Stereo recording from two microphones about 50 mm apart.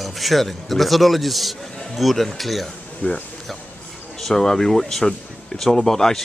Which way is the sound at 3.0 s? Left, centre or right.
Left.